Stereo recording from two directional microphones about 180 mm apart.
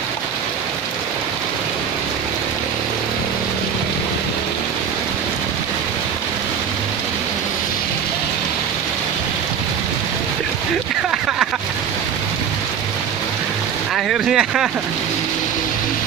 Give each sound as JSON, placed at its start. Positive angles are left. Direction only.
{"t": 13.9, "sound": "vehicle", "side_deg": 0}